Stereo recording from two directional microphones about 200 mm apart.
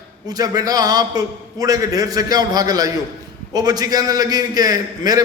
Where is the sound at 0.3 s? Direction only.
20° right (ahead or behind).